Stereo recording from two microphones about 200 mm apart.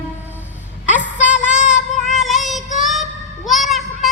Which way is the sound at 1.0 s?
5° right (ahead or behind).